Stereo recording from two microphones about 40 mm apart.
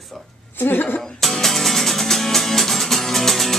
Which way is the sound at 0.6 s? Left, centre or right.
Left.